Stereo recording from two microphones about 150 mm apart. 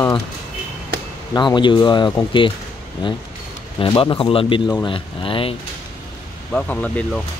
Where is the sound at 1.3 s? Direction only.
30° left (ahead or behind).